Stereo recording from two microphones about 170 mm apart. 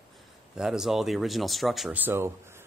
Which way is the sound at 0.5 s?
5° right (ahead or behind).